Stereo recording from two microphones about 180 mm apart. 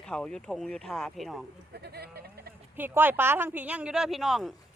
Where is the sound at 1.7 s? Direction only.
65° right (ahead or behind).